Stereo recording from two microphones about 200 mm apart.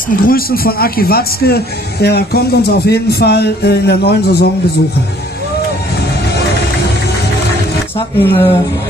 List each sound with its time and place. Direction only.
0.1 s speech: 45° left (ahead or behind)
8.2 s a woman's voice: 15° left (ahead or behind)